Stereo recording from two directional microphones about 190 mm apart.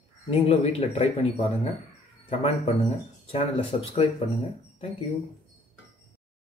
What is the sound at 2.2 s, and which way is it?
A man's voice, 30° left (ahead or behind).